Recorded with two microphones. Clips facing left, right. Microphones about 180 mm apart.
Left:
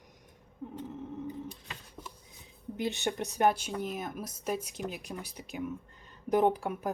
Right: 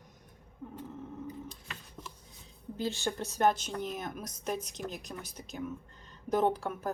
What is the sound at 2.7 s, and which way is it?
A woman's voice, 20° left (ahead or behind).